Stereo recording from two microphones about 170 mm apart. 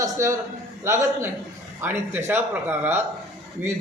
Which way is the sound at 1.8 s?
15° right (ahead or behind).